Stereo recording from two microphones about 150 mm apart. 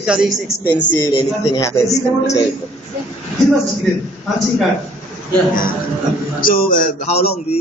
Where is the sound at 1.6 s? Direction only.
20° left (ahead or behind).